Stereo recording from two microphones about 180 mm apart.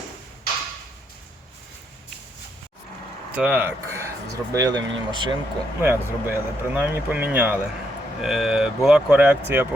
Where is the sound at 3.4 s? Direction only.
10° right (ahead or behind); by 5.3 s 25° right (ahead or behind).